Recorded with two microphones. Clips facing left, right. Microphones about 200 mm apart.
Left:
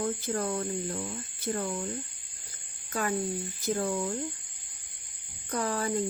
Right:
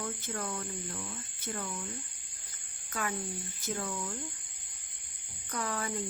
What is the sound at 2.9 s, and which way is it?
Speech, 35° left (ahead or behind).